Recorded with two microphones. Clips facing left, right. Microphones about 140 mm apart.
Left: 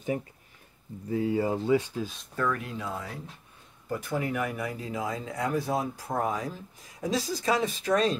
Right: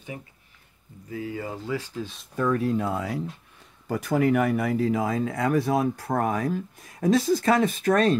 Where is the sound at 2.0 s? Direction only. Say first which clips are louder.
Even; centre (ahead or behind).